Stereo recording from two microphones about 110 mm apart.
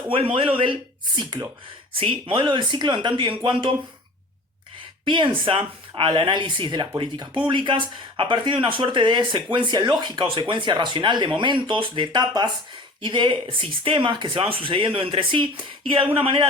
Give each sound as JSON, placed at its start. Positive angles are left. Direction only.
{"t": 0.3, "sound": "speech", "side_deg": -55}
{"t": 2.0, "sound": "speech", "side_deg": -55}
{"t": 5.0, "sound": "speech", "side_deg": -50}